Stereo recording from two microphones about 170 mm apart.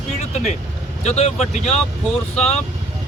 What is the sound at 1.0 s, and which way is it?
Speech, 40° left (ahead or behind).